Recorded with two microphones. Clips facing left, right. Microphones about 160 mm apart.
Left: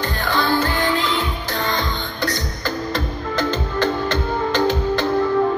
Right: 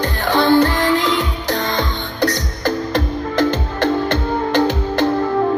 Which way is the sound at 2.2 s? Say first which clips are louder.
Right 8 dB; 75° right (ahead or behind).